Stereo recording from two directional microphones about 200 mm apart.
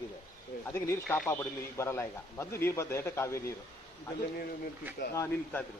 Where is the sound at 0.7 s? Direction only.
10° left (ahead or behind).